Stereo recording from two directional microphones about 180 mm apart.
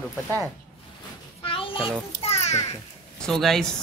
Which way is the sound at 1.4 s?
30° left (ahead or behind).